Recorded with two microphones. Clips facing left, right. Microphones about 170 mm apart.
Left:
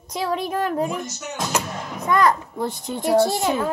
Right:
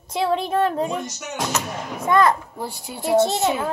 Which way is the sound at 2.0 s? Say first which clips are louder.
Right 1 dB; 25° right (ahead or behind).